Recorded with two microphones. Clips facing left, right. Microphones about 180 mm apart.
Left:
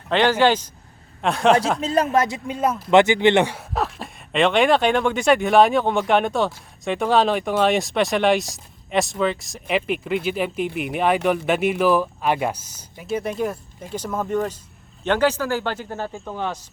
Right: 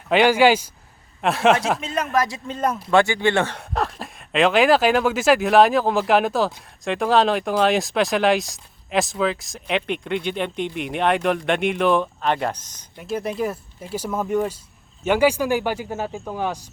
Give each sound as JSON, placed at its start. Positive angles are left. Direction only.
{"t": 0.1, "sound": "speech", "side_deg": -10}
{"t": 1.8, "sound": "speech", "side_deg": 35}
{"t": 2.1, "sound": "speech", "side_deg": 25}
{"t": 2.5, "sound": "speech", "side_deg": 5}
{"t": 2.9, "sound": "speech", "side_deg": 20}
{"t": 3.5, "sound": "speech", "side_deg": 0}